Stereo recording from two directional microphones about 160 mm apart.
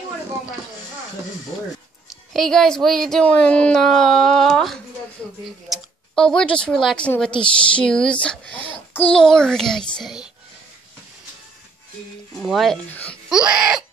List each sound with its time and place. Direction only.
2.0 s speech: centre (ahead or behind)
12.4 s speech: centre (ahead or behind)
13.3 s speech: 5° right (ahead or behind)